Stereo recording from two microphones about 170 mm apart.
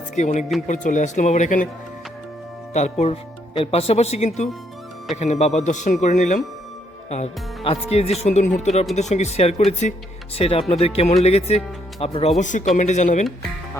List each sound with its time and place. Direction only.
0.2 s a man's voice: 45° left (ahead or behind)
2.7 s a man's voice: 40° left (ahead or behind)